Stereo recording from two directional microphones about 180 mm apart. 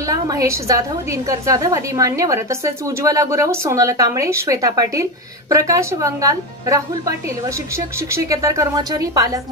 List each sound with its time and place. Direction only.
0.0 s a woman's voice: 20° right (ahead or behind)